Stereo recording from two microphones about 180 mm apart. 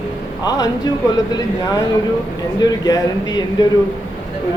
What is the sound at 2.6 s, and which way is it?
Speech, 20° left (ahead or behind).